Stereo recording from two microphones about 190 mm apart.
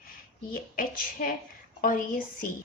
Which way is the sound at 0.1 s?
50° left (ahead or behind).